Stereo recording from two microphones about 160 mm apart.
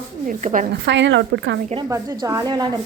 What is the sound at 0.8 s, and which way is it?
Speech, 90° right.